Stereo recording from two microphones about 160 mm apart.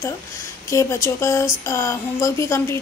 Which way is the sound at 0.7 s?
20° left (ahead or behind).